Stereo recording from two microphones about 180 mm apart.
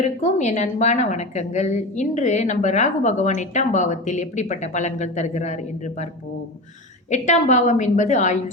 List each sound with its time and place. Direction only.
0.0 s a woman's voice: 40° left (ahead or behind)
7.1 s a woman's voice: 40° left (ahead or behind)